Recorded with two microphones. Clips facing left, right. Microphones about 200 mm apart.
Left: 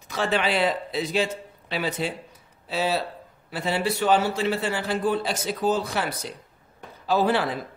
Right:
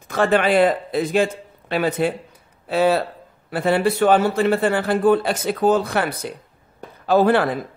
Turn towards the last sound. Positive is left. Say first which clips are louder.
# right 6 dB
turn(degrees=-55)  # may be behind; listen again after turning